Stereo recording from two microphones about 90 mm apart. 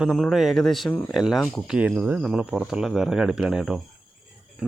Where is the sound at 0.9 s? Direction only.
20° left (ahead or behind).